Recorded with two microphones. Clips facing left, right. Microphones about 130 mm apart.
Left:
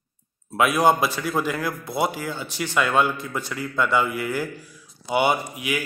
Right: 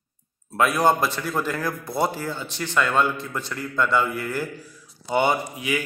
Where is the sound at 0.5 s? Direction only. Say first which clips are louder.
Left 1 dB; 10° left (ahead or behind).